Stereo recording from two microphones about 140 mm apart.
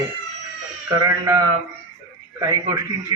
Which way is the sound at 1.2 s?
20° right (ahead or behind).